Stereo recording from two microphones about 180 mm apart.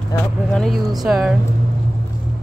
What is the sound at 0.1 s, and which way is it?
Speech, 20° left (ahead or behind).